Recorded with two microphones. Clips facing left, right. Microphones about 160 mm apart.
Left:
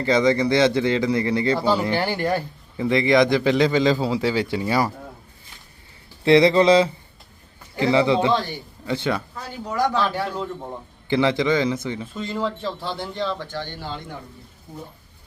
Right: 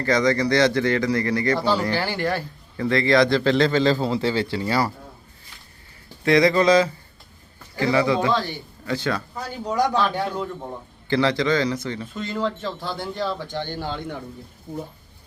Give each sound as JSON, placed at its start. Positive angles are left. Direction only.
{"t": 0.0, "sound": "speech", "side_deg": 25}
{"t": 1.5, "sound": "a man's voice", "side_deg": 10}
{"t": 1.8, "sound": "a man's voice", "side_deg": 20}
{"t": 6.2, "sound": "speech", "side_deg": 25}
{"t": 9.3, "sound": "speech", "side_deg": -15}
{"t": 11.1, "sound": "speech", "side_deg": 20}
{"t": 12.2, "sound": "speech", "side_deg": 5}